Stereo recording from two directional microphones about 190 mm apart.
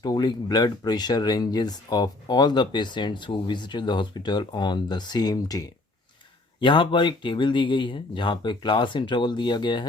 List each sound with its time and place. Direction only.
0.0 s speech: 20° left (ahead or behind)